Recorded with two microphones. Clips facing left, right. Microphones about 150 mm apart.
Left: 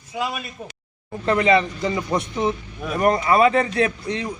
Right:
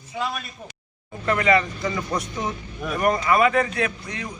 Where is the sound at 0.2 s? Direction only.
5° left (ahead or behind).